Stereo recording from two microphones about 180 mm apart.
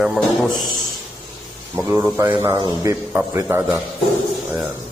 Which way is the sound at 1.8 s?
20° right (ahead or behind).